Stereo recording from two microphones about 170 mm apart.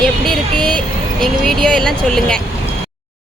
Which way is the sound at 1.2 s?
5° left (ahead or behind).